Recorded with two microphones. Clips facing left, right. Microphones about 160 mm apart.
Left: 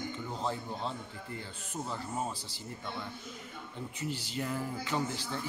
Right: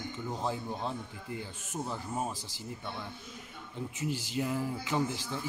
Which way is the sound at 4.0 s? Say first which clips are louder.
Right 3 dB; 15° right (ahead or behind).